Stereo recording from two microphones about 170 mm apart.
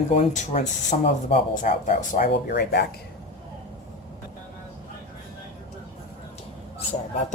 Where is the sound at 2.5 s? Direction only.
70° left (ahead or behind).